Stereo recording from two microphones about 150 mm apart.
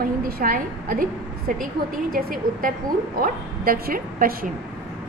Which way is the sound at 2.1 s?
70° right (ahead or behind).